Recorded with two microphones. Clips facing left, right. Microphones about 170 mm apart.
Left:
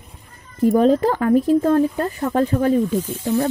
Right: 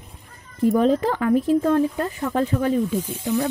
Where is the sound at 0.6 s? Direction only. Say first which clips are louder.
Left 3 dB; 40° left (ahead or behind).